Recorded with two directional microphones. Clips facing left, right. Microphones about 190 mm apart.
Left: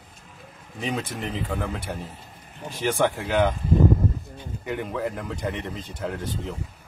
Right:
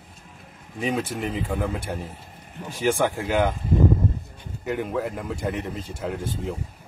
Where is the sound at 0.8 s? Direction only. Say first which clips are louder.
Right 3 dB; 5° right (ahead or behind).